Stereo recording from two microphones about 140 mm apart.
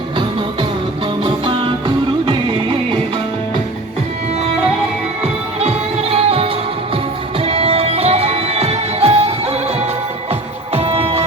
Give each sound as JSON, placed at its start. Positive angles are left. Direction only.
{"t": 5.2, "sound": "music", "side_deg": -45}
{"t": 10.8, "sound": "music", "side_deg": -45}